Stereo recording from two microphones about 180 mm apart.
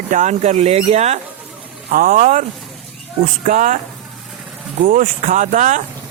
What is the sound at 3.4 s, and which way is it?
Speech, 45° right (ahead or behind).